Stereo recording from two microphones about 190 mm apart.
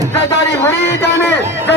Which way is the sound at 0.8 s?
65° left (ahead or behind).